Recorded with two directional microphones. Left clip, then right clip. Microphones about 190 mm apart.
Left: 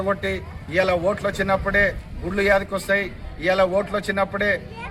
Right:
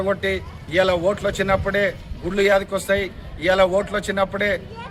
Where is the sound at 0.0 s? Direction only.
10° right (ahead or behind).